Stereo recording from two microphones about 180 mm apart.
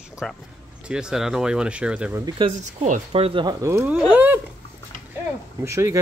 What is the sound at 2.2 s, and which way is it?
Speech, 25° right (ahead or behind).